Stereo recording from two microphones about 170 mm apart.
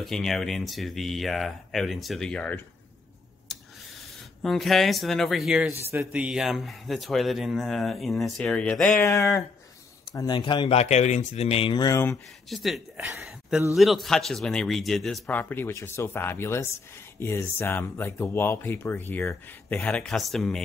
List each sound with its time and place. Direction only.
0.0 s speech: centre (ahead or behind)
4.4 s speech: centre (ahead or behind)
9.0 s speech: 20° left (ahead or behind); by 11.8 s 35° left (ahead or behind)
11.8 s speech: 20° left (ahead or behind)
12.4 s speech: centre (ahead or behind)